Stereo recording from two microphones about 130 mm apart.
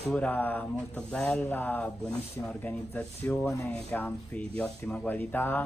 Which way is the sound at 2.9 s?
10° left (ahead or behind).